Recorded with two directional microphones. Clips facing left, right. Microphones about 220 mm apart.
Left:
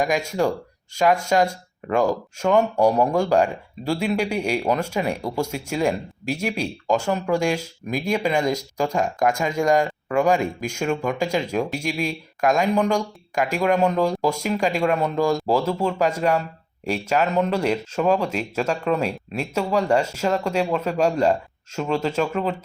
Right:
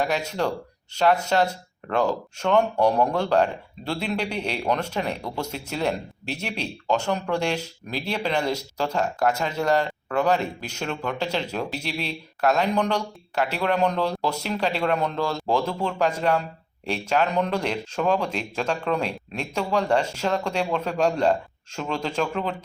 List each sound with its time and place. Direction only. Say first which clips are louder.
0.0 s speech: left 3 dB; 10° left (ahead or behind)